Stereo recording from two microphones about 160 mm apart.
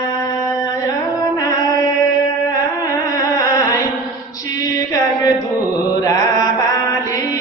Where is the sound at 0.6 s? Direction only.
20° left (ahead or behind).